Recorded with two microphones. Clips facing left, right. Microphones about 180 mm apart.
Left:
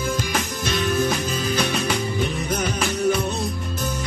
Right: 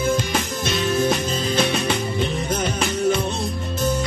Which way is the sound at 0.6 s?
25° right (ahead or behind).